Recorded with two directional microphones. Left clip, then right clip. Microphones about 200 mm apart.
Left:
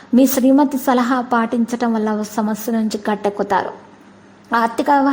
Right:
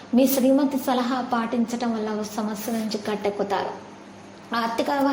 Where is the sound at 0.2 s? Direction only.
45° left (ahead or behind).